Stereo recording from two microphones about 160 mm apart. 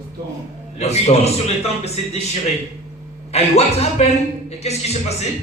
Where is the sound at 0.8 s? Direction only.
40° left (ahead or behind).